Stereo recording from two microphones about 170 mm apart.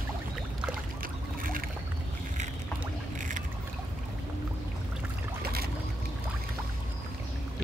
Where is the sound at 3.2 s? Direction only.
50° right (ahead or behind).